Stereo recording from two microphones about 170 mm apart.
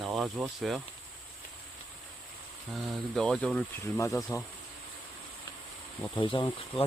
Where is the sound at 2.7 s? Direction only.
Centre (ahead or behind); by 4.4 s 20° left (ahead or behind).